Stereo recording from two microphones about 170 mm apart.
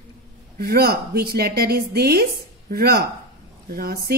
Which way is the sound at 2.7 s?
65° right (ahead or behind).